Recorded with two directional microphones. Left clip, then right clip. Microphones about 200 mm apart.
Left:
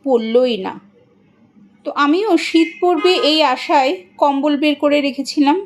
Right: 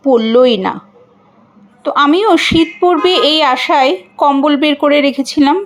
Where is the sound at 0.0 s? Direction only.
25° right (ahead or behind).